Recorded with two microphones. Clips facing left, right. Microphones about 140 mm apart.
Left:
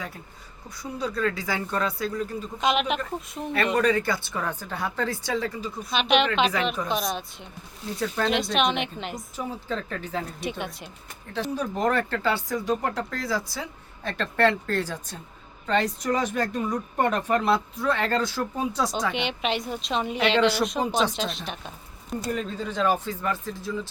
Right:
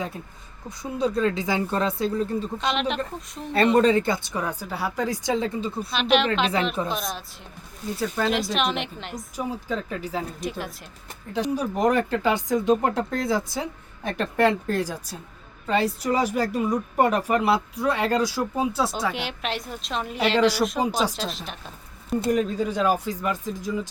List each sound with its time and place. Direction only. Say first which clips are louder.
0.8 s speech: right 4 dB; 25° right (ahead or behind)
2.6 s speech: left 5 dB; 5° left (ahead or behind)
3.5 s speech: right 5 dB; 30° right (ahead or behind)
5.9 s speech: even; centre (ahead or behind)
9.4 s speech: right 3 dB; 10° right (ahead or behind)
11.3 s speech: right 3 dB; 10° right (ahead or behind)
22.3 s speech: right 7 dB; 10° right (ahead or behind)